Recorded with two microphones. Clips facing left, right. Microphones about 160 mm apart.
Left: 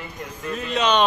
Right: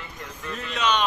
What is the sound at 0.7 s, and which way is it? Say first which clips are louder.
Speech: left 5 dB; 25° left (ahead or behind).